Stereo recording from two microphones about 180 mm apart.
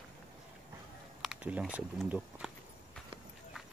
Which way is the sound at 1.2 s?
5° right (ahead or behind).